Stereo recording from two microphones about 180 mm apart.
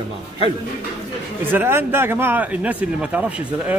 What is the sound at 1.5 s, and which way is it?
Speech, 10° right (ahead or behind).